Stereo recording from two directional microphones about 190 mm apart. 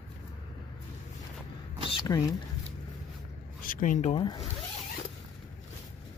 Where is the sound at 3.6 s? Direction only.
45° left (ahead or behind).